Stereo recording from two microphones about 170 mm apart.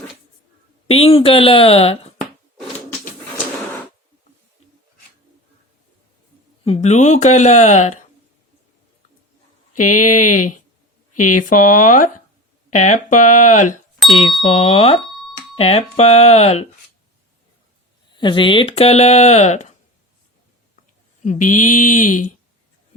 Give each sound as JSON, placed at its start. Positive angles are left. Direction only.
{"t": 0.9, "sound": "speech", "side_deg": 35}
{"t": 6.7, "sound": "speech", "side_deg": 40}
{"t": 10.1, "sound": "speech", "side_deg": 50}
{"t": 18.1, "sound": "speech", "side_deg": 25}
{"t": 21.2, "sound": "speech", "side_deg": 50}